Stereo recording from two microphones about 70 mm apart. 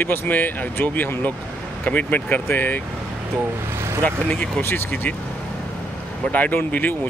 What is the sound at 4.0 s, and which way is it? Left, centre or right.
Speech, centre.